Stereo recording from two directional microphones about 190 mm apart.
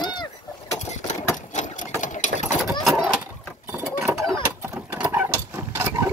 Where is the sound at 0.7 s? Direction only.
40° left (ahead or behind).